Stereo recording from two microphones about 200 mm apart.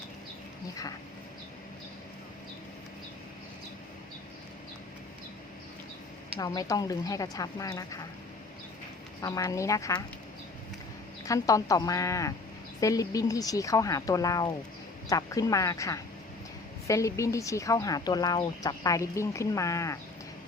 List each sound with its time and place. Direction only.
6.4 s speech: 20° left (ahead or behind)
9.2 s speech: 15° left (ahead or behind)
11.3 s speech: 15° left (ahead or behind)